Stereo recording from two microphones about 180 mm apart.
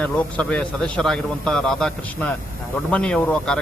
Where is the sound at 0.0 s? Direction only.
10° left (ahead or behind).